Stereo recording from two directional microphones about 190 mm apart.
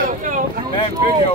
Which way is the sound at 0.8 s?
35° left (ahead or behind).